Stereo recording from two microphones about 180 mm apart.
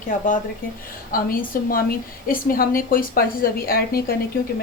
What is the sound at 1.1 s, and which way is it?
A woman's voice, 50° left (ahead or behind).